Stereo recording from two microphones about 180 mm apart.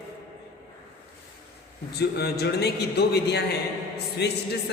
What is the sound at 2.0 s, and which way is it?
A man's voice, 65° left (ahead or behind).